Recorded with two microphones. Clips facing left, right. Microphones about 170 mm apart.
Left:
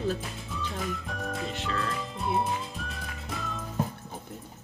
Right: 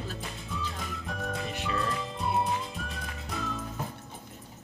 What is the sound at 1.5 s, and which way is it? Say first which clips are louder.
Music: even; 15° right (ahead or behind).